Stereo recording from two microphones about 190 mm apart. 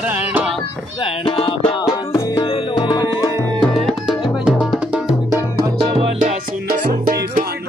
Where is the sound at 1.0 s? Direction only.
30° left (ahead or behind).